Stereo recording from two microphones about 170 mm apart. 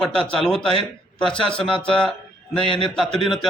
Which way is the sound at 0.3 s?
Centre (ahead or behind).